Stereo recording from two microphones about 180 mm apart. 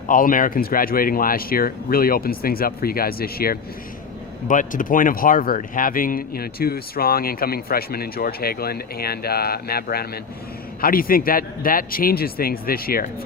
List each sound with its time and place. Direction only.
0.1 s speech: 50° left (ahead or behind)